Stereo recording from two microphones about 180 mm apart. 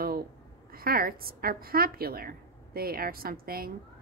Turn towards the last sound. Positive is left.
turn(degrees=-55)  # may be behind; listen again after turning